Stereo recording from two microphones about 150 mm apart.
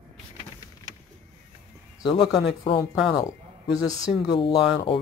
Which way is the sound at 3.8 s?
25° left (ahead or behind).